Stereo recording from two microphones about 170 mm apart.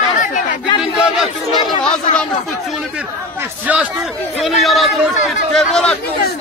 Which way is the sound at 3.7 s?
10° right (ahead or behind).